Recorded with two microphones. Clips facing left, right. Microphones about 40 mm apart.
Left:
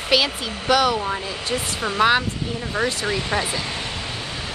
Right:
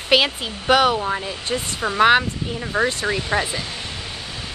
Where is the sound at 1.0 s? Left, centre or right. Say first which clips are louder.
Right 1 dB; centre.